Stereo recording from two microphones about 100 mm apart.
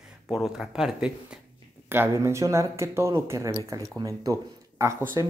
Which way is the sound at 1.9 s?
25° right (ahead or behind).